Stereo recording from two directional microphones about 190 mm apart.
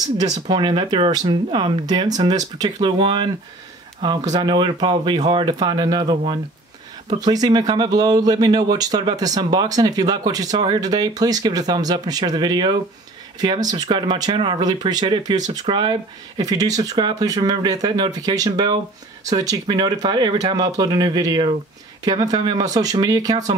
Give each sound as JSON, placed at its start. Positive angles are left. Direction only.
{"t": 0.5, "sound": "speech", "side_deg": -25}